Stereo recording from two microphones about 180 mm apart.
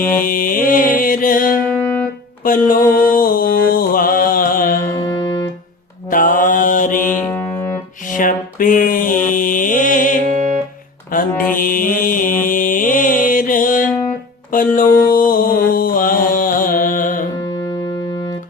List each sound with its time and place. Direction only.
0.0 s music: 50° left (ahead or behind)
1.7 s music: 10° left (ahead or behind)
2.4 s mantra: 50° left (ahead or behind)
6.1 s mantra: 50° left (ahead or behind)
7.2 s music: 15° left (ahead or behind)
8.1 s mantra: 50° left (ahead or behind)
10.2 s music: 45° right (ahead or behind)
11.1 s mantra: 50° left (ahead or behind)
14.5 s music: 50° left (ahead or behind)
14.9 s a sound: 50° left (ahead or behind)